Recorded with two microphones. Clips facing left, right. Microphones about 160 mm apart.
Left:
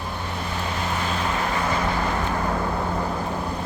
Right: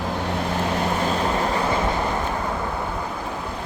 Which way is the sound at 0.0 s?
85° right.